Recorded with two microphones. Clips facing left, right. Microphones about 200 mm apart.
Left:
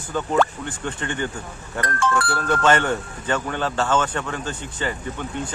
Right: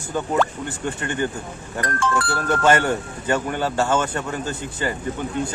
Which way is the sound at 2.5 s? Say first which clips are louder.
Right 1 dB; 10° right (ahead or behind).